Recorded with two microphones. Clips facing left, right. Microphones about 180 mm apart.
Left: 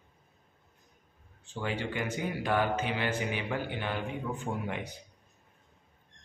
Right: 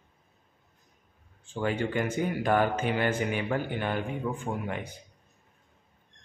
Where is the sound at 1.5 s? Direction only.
50° right (ahead or behind).